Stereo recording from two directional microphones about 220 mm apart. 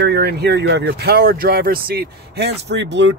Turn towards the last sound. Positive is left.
turn(degrees=-55)  # may be behind; listen again after turning